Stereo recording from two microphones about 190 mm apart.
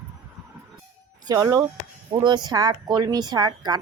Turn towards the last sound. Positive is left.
turn(degrees=-20)  # may be behind; listen again after turning